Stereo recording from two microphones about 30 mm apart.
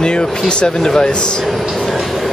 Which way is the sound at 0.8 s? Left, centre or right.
Centre.